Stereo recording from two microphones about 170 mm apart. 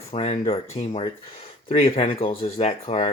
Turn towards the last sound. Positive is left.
turn(degrees=40)  # may be behind; listen again after turning